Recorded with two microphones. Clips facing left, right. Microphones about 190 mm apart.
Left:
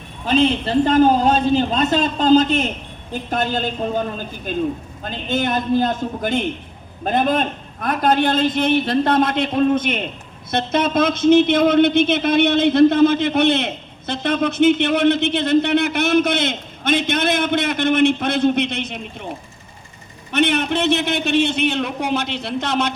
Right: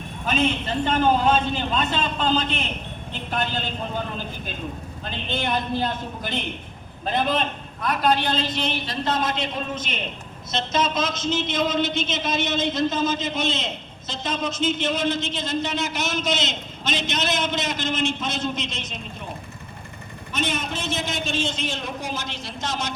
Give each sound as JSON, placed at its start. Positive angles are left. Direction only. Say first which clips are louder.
{"t": 0.3, "sound": "a man's voice", "louder": "left 6 dB", "side_deg": 30}
{"t": 5.0, "sound": "a man's voice", "louder": "left 6 dB", "side_deg": 45}
{"t": 20.3, "sound": "a man's voice", "louder": "left 9 dB", "side_deg": 65}